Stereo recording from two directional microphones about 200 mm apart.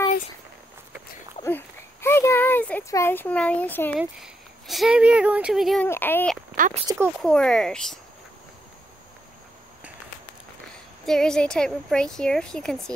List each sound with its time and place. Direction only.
1.4 s a sound: 10° left (ahead or behind)
4.0 s a woman's voice: centre (ahead or behind)
5.9 s speech: 10° left (ahead or behind)
6.5 s speech: 40° right (ahead or behind)
7.2 s a woman's voice: 5° left (ahead or behind)
10.7 s a woman's voice: 5° left (ahead or behind)